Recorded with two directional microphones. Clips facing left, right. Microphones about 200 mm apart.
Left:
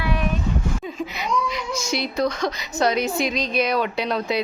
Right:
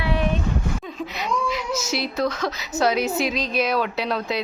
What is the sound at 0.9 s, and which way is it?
Speech, centre (ahead or behind).